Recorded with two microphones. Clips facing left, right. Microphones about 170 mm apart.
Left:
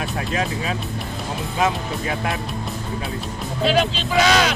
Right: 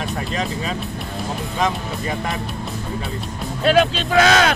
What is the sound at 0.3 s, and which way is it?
Speech, 5° left (ahead or behind).